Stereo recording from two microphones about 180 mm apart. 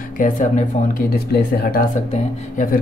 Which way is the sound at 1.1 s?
60° left (ahead or behind).